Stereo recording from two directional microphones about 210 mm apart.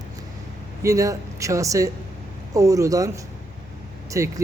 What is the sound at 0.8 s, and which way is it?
A man's voice, 15° right (ahead or behind).